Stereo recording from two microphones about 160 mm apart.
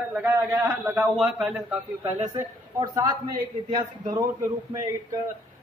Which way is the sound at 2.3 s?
25° right (ahead or behind).